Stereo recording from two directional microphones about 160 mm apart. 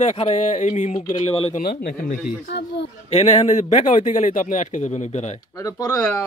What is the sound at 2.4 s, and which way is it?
Speech, 90° left.